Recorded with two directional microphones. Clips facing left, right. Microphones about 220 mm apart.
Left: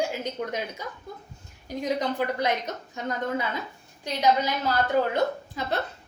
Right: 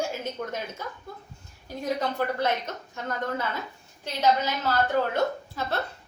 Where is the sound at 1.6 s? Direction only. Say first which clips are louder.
Left 2 dB; 15° left (ahead or behind).